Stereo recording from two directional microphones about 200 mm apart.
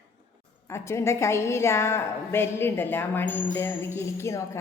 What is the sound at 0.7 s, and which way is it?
A woman's voice, 15° left (ahead or behind).